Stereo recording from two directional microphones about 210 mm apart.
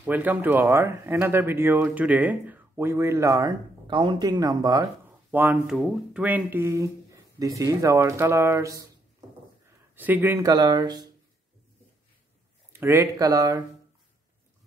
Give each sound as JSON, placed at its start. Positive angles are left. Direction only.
{"t": 0.0, "sound": "speech", "side_deg": -10}
{"t": 5.3, "sound": "speech", "side_deg": -5}
{"t": 9.9, "sound": "speech", "side_deg": -10}
{"t": 12.7, "sound": "speech", "side_deg": -15}